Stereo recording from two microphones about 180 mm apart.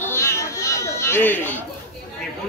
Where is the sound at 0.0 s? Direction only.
15° left (ahead or behind).